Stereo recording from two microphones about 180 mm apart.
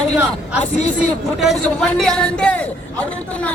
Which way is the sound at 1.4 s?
Centre (ahead or behind).